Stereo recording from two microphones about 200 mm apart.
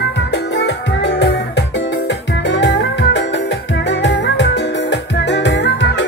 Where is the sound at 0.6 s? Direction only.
60° left (ahead or behind).